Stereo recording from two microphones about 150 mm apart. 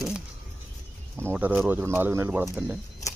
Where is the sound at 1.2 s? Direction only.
15° right (ahead or behind).